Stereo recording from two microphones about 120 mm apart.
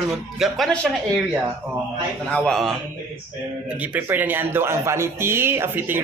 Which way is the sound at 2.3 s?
5° left (ahead or behind).